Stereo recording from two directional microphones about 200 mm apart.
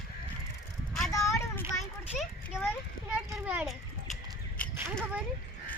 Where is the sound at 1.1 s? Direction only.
15° left (ahead or behind).